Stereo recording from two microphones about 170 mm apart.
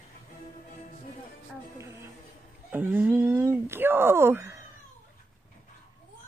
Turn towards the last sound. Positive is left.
turn(degrees=-15)  # may be behind; listen again after turning